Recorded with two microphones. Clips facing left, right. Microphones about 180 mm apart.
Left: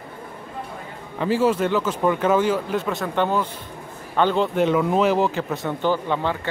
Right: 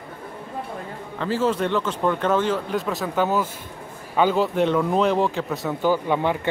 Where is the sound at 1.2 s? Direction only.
10° left (ahead or behind).